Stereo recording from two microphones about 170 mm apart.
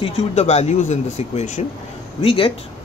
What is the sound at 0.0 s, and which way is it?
Speech, 40° left (ahead or behind).